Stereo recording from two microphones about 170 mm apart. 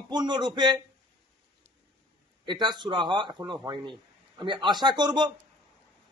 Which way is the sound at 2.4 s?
25° right (ahead or behind).